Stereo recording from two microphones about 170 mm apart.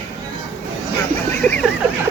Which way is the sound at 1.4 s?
10° left (ahead or behind).